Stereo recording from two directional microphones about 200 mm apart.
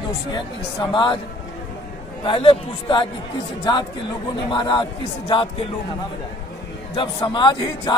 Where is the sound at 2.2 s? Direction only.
25° left (ahead or behind).